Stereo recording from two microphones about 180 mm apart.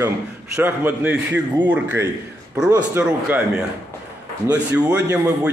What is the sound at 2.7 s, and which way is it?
Speech, 10° right (ahead or behind).